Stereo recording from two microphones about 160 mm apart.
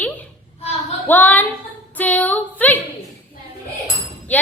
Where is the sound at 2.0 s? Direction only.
10° left (ahead or behind).